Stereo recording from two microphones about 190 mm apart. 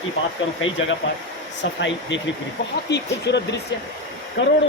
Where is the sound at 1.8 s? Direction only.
75° left (ahead or behind).